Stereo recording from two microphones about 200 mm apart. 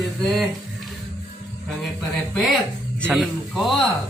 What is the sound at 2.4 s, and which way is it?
Speech, 5° left (ahead or behind).